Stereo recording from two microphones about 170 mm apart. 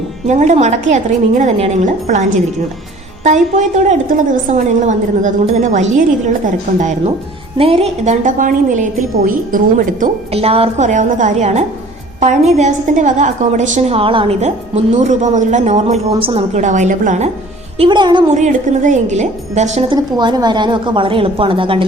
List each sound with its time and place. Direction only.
0.3 s a woman's voice: 45° right (ahead or behind)
3.2 s a woman's voice: 45° right (ahead or behind)
10.3 s a woman's voice: 35° right (ahead or behind)
17.7 s a woman's voice: 25° right (ahead or behind)
18.3 s a woman's voice: 45° right (ahead or behind)
19.9 s a woman's voice: 25° right (ahead or behind)